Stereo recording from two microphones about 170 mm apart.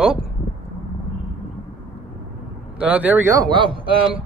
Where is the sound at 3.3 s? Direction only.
25° right (ahead or behind).